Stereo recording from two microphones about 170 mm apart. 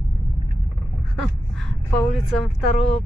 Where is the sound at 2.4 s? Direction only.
35° left (ahead or behind).